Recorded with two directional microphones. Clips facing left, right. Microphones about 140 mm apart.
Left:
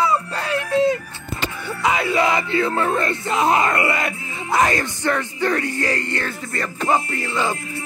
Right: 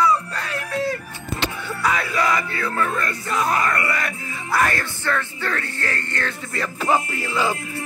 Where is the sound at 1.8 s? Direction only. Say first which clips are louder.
Left 3 dB; 25° left (ahead or behind).